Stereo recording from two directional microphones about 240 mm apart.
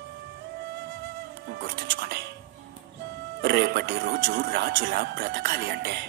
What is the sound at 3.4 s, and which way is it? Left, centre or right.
Speech, right.